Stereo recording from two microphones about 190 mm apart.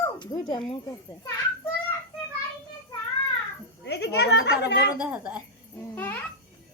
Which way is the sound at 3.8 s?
65° left (ahead or behind).